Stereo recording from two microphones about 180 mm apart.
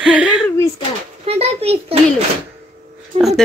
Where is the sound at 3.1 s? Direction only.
30° right (ahead or behind).